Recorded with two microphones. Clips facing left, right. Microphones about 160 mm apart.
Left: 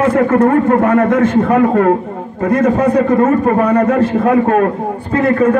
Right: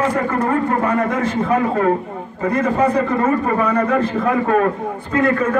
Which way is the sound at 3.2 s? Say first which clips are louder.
Left 6 dB; 45° left (ahead or behind).